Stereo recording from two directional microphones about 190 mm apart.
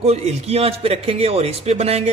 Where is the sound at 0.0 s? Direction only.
35° right (ahead or behind).